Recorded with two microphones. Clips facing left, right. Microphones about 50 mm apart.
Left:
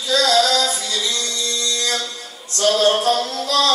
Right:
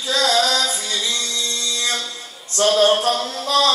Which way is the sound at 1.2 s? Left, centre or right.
Right.